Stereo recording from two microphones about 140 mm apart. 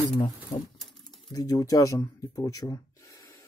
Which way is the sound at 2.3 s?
25° left (ahead or behind).